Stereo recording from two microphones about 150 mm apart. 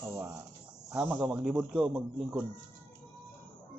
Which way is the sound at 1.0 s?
10° right (ahead or behind).